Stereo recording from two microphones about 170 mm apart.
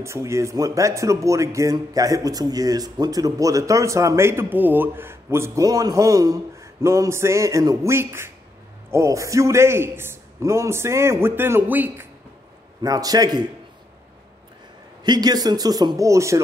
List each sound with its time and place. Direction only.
0.0 s a man's voice: 15° right (ahead or behind)
12.8 s speech: 20° right (ahead or behind)
15.0 s speech: 25° right (ahead or behind)